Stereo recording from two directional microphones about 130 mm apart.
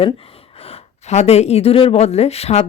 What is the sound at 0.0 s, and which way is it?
Speech, 45° left (ahead or behind).